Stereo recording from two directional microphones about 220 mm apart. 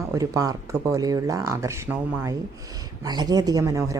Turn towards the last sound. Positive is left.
turn(degrees=-15)  # may be behind; listen again after turning